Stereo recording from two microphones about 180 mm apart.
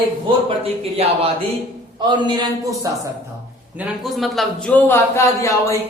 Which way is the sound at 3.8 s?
Centre (ahead or behind).